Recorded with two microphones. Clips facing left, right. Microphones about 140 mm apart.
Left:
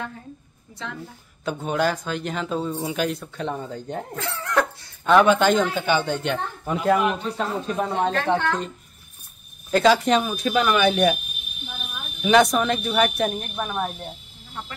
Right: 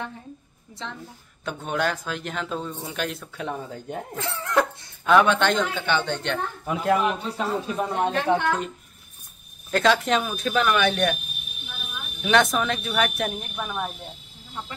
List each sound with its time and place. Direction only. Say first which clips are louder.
1.4 s a man's voice: left 3 dB; centre (ahead or behind)
4.2 s speech: even; 25° right (ahead or behind)
5.0 s a man's voice: left 2 dB; 5° left (ahead or behind)
9.7 s a man's voice: left 3 dB; centre (ahead or behind)
12.2 s a man's voice: left 3 dB; 5° left (ahead or behind)